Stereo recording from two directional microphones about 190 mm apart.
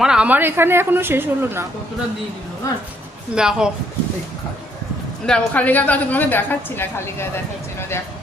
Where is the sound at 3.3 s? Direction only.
5° right (ahead or behind).